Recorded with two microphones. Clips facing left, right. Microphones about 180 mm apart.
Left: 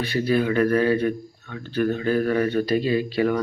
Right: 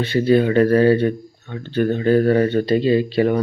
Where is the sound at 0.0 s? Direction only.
25° right (ahead or behind).